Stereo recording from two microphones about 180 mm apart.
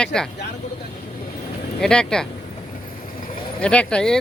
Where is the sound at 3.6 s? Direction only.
5° left (ahead or behind).